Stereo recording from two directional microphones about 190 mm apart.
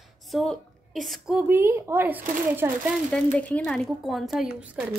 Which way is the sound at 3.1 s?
5° left (ahead or behind).